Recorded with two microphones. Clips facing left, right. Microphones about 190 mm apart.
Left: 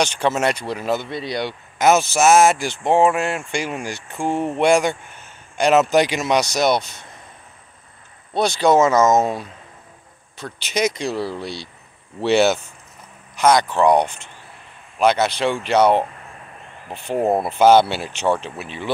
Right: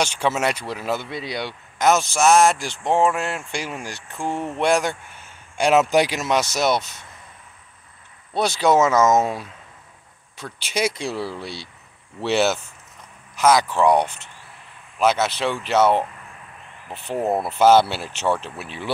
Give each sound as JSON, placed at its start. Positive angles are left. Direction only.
{"t": 0.0, "sound": "speech", "side_deg": -5}
{"t": 8.4, "sound": "speech", "side_deg": -5}
{"t": 17.2, "sound": "speech", "side_deg": 15}
{"t": 17.5, "sound": "speech", "side_deg": -5}